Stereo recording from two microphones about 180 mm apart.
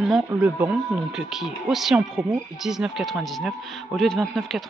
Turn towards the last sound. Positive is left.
turn(degrees=0)  # may be behind; listen again after turning